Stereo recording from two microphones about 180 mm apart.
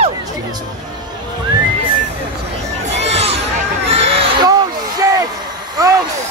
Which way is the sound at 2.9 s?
35° right (ahead or behind).